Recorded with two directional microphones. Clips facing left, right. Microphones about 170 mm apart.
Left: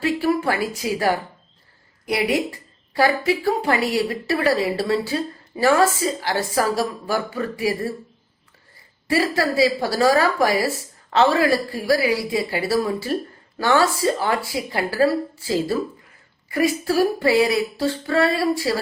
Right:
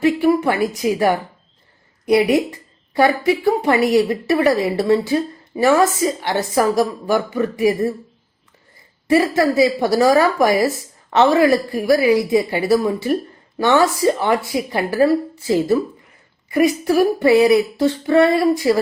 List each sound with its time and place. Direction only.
0.0 s a woman's voice: 20° right (ahead or behind)
9.0 s a woman's voice: 20° right (ahead or behind)